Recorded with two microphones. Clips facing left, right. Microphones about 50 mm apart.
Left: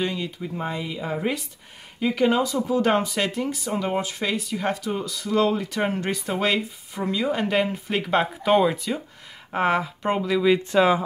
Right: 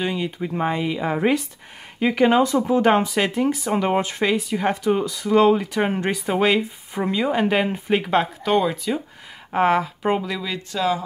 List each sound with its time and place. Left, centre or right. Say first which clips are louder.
0.0 s speech: right 2 dB; centre
0.4 s speech: right 6 dB; right
2.0 s speech: right 4 dB; right
2.8 s speech: right 2 dB; right
3.7 s speech: right 5 dB; right
4.3 s speech: right 4 dB; right
8.1 s speech: left 3 dB; centre
10.4 s speech: left 6 dB; left